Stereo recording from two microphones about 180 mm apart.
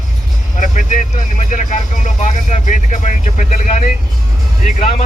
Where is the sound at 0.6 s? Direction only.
45° left (ahead or behind).